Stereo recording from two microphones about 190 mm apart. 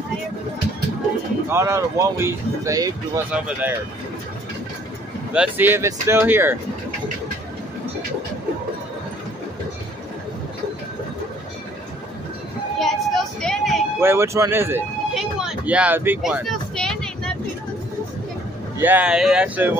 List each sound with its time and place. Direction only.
1.5 s speech: 15° right (ahead or behind)
3.3 s speech: 5° right (ahead or behind)
5.3 s speech: 10° right (ahead or behind)
12.7 s a sound: centre (ahead or behind)
13.9 s speech: 15° right (ahead or behind)
15.1 s a sound: 5° right (ahead or behind)
18.8 s speech: 10° right (ahead or behind)